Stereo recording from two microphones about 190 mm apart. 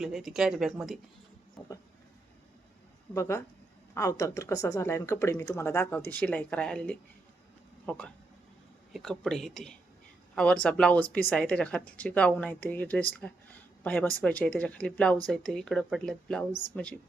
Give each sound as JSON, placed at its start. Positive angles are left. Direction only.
{"t": 0.0, "sound": "speech", "side_deg": 0}
{"t": 3.2, "sound": "speech", "side_deg": 15}